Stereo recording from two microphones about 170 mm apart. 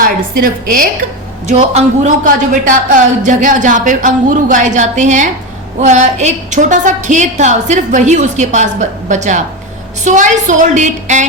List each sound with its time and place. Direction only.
0.0 s a woman's voice: 55° right (ahead or behind)
1.5 s speech: 45° right (ahead or behind)